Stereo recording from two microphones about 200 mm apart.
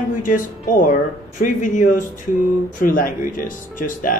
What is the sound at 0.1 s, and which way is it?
Speech, 40° left (ahead or behind).